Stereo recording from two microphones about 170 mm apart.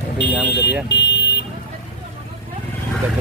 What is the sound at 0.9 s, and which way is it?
Car alarm, 90° left.